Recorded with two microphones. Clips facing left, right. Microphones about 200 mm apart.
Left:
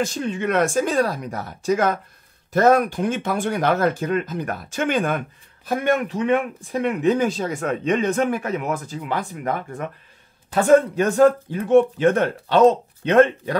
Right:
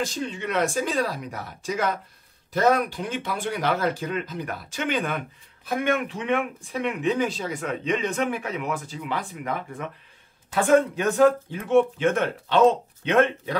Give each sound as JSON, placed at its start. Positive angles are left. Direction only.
{"t": 0.0, "sound": "speech", "side_deg": 50}